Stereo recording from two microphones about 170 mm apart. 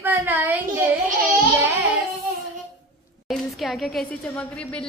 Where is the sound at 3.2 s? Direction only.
Centre (ahead or behind).